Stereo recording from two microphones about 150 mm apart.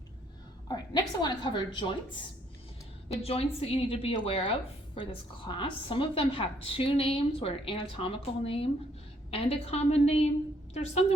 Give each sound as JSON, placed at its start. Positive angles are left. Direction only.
{"t": 0.7, "sound": "a woman's voice", "side_deg": 30}
{"t": 3.1, "sound": "a woman's voice", "side_deg": 45}